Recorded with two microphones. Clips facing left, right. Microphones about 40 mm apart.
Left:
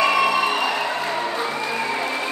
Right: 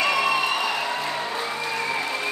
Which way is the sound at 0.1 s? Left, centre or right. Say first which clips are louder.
Left 3 dB; centre.